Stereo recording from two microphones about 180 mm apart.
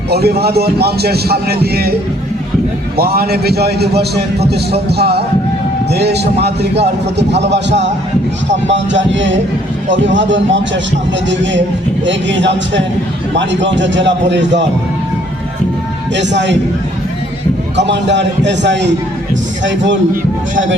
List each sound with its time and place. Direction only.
0.1 s a man's voice: 60° right (ahead or behind)
3.0 s a man's voice: 55° right (ahead or behind); by 7.9 s 75° right (ahead or behind)
8.4 s speech: 90° right
12.0 s a man's voice: 85° right
16.1 s a man's voice: 80° right
17.7 s a man's voice: 75° right (ahead or behind)
19.6 s speech: 90° right